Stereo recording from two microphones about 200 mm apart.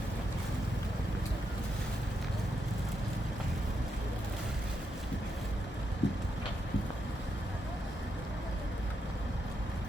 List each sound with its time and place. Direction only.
6.0 s vehicle: 60° left (ahead or behind)